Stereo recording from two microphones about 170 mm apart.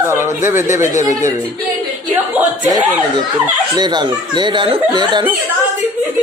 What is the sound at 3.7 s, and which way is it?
Speech, 25° right (ahead or behind).